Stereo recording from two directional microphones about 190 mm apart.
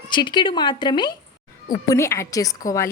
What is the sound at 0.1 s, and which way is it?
A woman's voice, 25° left (ahead or behind).